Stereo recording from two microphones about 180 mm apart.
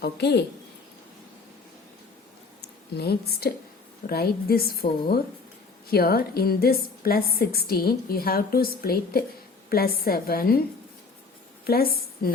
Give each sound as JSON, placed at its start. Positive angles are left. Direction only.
{"t": 0.0, "sound": "speech", "side_deg": 70}
{"t": 2.9, "sound": "a woman's voice", "side_deg": 65}
{"t": 11.6, "sound": "a woman's voice", "side_deg": 55}